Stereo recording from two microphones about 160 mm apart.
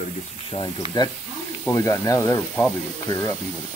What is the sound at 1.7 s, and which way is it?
Speech, 20° left (ahead or behind).